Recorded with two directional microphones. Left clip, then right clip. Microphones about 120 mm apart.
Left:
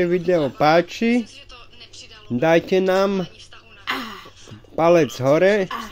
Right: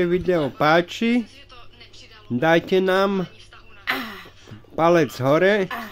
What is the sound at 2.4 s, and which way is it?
Speech, centre (ahead or behind).